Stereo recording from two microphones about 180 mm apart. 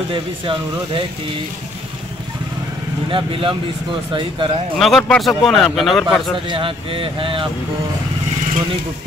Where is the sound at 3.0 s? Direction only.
30° right (ahead or behind).